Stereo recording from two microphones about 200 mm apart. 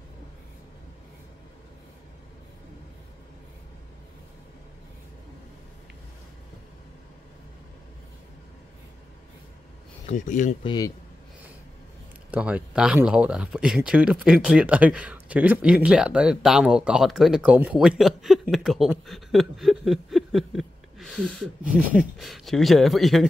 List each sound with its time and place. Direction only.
10.0 s speech: 40° left (ahead or behind)
10.6 s speech: 20° left (ahead or behind)
12.3 s speech: 5° right (ahead or behind)